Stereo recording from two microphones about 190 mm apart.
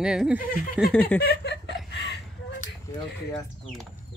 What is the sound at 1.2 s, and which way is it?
Chuckle, 60° left (ahead or behind).